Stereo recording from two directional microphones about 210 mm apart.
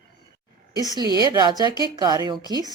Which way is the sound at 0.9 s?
20° right (ahead or behind).